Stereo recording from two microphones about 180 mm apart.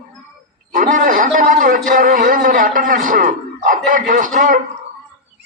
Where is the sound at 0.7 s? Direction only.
45° right (ahead or behind).